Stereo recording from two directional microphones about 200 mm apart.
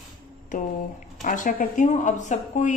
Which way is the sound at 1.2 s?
40° left (ahead or behind).